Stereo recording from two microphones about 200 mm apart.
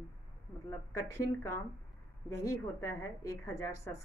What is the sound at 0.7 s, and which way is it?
A woman's voice, 15° left (ahead or behind).